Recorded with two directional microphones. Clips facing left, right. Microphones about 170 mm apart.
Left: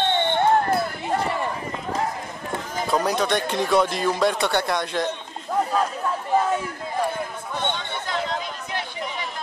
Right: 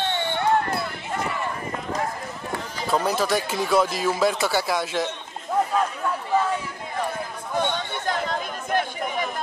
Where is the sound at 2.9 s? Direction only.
5° right (ahead or behind).